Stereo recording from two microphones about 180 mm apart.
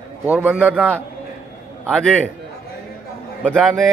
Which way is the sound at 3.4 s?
5° left (ahead or behind).